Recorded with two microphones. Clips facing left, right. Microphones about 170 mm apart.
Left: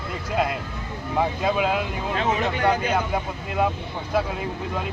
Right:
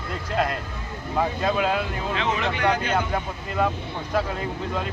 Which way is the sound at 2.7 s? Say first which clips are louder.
Left 1 dB; 5° left (ahead or behind).